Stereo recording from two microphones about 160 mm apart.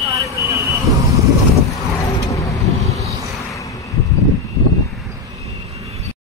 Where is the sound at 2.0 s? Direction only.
20° left (ahead or behind).